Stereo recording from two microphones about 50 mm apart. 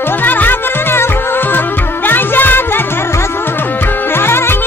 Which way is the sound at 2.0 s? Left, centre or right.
Left.